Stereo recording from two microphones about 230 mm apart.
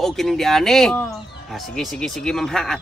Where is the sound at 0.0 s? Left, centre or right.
Centre.